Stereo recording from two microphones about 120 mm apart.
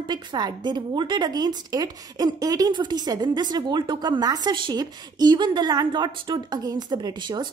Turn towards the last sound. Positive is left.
turn(degrees=-40)  # may be behind; listen again after turning